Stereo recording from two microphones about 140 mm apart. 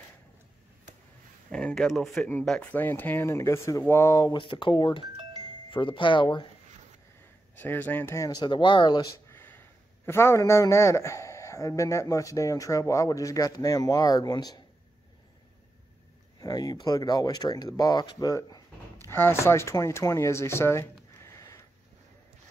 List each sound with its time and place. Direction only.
1.5 s speech: 5° left (ahead or behind); by 6.4 s 35° left (ahead or behind)
7.5 s speech: 15° left (ahead or behind); by 9.0 s 35° left (ahead or behind)
9.3 s a sound: 15° left (ahead or behind)
10.0 s speech: 20° left (ahead or behind)
16.3 s speech: 30° left (ahead or behind)
19.0 s speech: 15° left (ahead or behind)
21.2 s a sound: 20° left (ahead or behind)